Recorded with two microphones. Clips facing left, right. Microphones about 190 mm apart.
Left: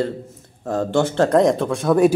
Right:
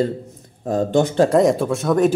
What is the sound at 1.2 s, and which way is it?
Speech, 5° right (ahead or behind).